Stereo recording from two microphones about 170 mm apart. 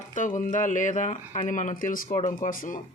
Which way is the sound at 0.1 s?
50° left (ahead or behind).